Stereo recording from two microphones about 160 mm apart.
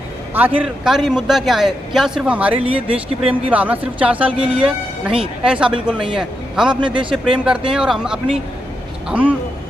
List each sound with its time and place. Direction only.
0.3 s a man's voice: 10° right (ahead or behind)
2.6 s speech: 35° right (ahead or behind)
3.4 s a man's voice: 10° right (ahead or behind)
6.8 s speech: 30° right (ahead or behind)
7.2 s a man's voice: 5° right (ahead or behind)